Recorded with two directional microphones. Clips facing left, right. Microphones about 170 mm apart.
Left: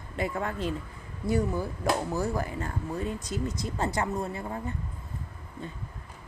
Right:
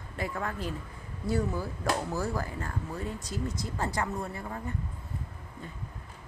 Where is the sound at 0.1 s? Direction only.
25° left (ahead or behind).